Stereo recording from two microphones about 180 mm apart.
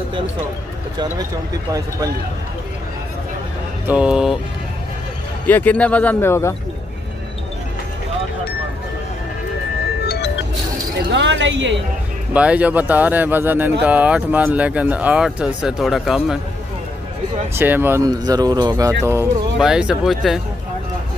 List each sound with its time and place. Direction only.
3.8 s speech: 5° right (ahead or behind)
5.5 s speech: 10° left (ahead or behind)
10.0 s music: 60° left (ahead or behind)
11.0 s speech: 85° right
12.4 s speech: 5° right (ahead or behind)
17.6 s speech: 10° right (ahead or behind)
19.6 s speech: 5° right (ahead or behind)